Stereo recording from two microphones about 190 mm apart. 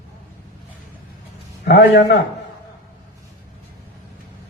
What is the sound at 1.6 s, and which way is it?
Speech, 65° left (ahead or behind).